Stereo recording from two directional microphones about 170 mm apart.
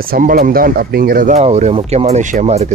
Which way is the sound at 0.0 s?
60° right (ahead or behind).